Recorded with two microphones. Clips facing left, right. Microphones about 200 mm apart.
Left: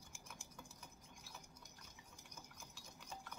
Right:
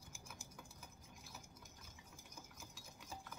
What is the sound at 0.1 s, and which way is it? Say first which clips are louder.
Typing: right 2 dB; centre (ahead or behind).